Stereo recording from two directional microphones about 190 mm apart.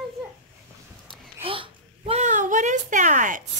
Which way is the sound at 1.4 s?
30° right (ahead or behind).